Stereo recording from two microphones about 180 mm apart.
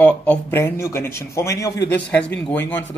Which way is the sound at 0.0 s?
10° left (ahead or behind).